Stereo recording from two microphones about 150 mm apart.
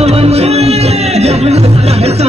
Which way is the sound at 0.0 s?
45° right (ahead or behind).